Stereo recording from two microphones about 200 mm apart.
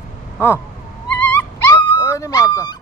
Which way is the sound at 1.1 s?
10° left (ahead or behind).